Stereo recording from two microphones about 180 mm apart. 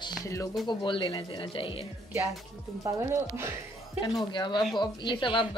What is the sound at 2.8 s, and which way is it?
Speech, 15° right (ahead or behind).